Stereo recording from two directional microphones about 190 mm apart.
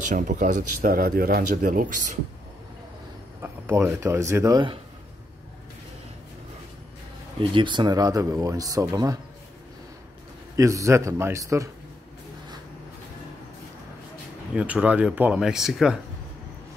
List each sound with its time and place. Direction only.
0.1 s speech: 40° right (ahead or behind)
3.3 s speech: 10° right (ahead or behind)
7.3 s speech: 25° right (ahead or behind)
10.5 s speech: 15° right (ahead or behind)
14.5 s speech: 5° right (ahead or behind)